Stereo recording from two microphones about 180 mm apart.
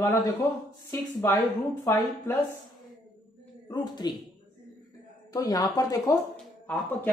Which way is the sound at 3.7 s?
20° left (ahead or behind).